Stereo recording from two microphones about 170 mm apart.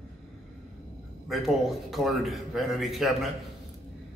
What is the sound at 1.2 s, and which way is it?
A man's voice, centre (ahead or behind).